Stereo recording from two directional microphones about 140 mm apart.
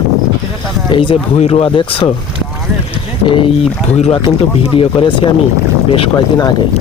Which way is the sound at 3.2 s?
40° left (ahead or behind).